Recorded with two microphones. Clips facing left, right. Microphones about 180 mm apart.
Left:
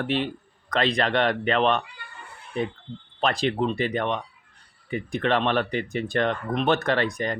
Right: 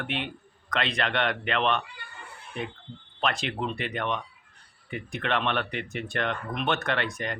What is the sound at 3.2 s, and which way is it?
Speech, 35° left (ahead or behind).